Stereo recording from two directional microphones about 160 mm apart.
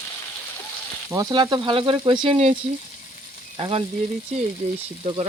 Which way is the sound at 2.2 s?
40° right (ahead or behind).